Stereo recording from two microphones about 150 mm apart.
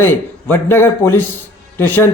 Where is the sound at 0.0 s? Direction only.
15° left (ahead or behind).